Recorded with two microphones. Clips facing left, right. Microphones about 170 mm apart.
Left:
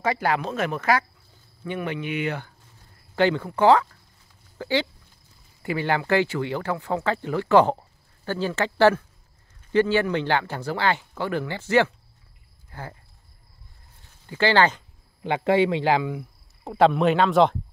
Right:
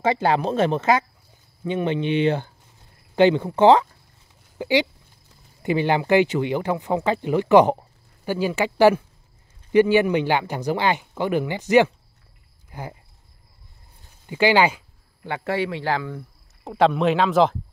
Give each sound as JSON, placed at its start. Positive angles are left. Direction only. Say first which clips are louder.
{"t": 0.0, "sound": "speech", "louder": "right 4 dB", "side_deg": -25}
{"t": 12.6, "sound": "a sound", "louder": "right 3 dB", "side_deg": -15}
{"t": 14.2, "sound": "speech", "louder": "right 2 dB", "side_deg": -15}
{"t": 15.2, "sound": "speech", "louder": "left 5 dB", "side_deg": 20}
{"t": 16.6, "sound": "speech", "louder": "even", "side_deg": 0}